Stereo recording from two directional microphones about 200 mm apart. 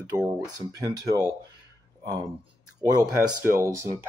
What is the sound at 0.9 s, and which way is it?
Speech, 20° right (ahead or behind).